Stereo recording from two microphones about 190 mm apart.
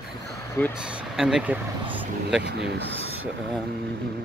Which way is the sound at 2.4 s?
60° right (ahead or behind).